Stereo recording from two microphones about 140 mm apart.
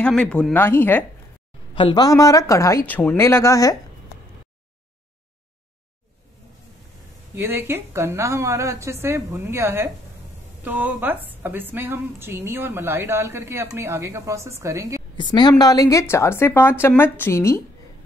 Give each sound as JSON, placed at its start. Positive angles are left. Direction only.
{"t": 0.0, "sound": "speech", "side_deg": 5}
{"t": 1.8, "sound": "a woman's voice", "side_deg": 35}
{"t": 2.0, "sound": "a woman's voice", "side_deg": 25}
{"t": 2.9, "sound": "a woman's voice", "side_deg": 10}
{"t": 7.3, "sound": "a woman's voice", "side_deg": -15}
{"t": 15.1, "sound": "a woman's voice", "side_deg": 35}